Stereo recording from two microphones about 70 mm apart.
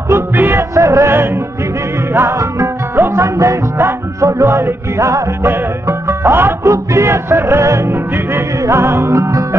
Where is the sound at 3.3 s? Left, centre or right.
Right.